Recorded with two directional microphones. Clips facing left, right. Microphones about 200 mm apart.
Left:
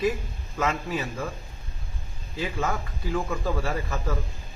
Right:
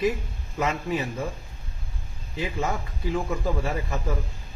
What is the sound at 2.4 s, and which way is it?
A man's voice, 20° right (ahead or behind).